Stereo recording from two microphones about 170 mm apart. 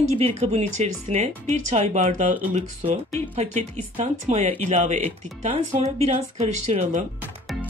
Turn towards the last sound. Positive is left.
turn(degrees=-40)  # may be behind; listen again after turning